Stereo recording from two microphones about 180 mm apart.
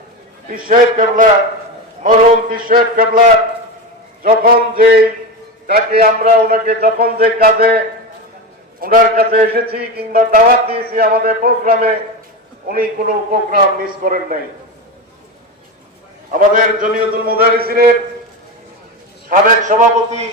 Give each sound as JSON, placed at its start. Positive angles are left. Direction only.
{"t": 0.5, "sound": "mantra", "side_deg": -50}
{"t": 4.2, "sound": "a man's voice", "side_deg": -55}
{"t": 8.8, "sound": "a man's voice", "side_deg": -55}
{"t": 13.8, "sound": "mantra", "side_deg": -50}
{"t": 16.3, "sound": "a man's voice", "side_deg": -50}
{"t": 19.3, "sound": "a man's voice", "side_deg": -40}